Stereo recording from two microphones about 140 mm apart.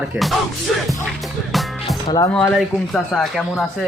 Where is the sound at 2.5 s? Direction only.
Centre (ahead or behind).